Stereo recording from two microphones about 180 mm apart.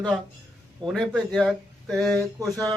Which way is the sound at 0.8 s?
Centre (ahead or behind).